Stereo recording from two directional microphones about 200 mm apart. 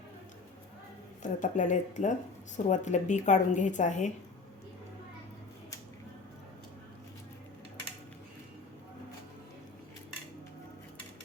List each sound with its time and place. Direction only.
1.2 s a woman's voice: 40° left (ahead or behind)